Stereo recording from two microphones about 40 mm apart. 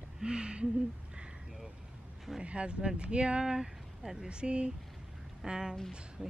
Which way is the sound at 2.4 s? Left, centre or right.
Right.